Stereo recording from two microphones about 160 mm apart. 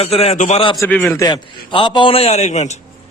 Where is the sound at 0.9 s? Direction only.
10° left (ahead or behind).